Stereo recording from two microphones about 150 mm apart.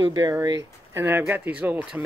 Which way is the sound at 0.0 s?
30° right (ahead or behind).